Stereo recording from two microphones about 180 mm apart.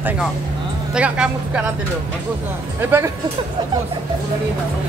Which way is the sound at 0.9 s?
5° right (ahead or behind).